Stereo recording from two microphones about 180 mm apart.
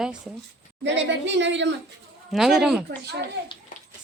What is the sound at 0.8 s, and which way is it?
Speech, 80° right.